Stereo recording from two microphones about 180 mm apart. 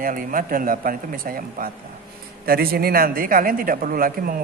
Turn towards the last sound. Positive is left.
turn(degrees=-55)  # may be behind; listen again after turning